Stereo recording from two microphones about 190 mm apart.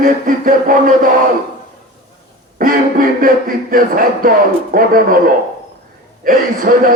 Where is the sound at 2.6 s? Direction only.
50° right (ahead or behind).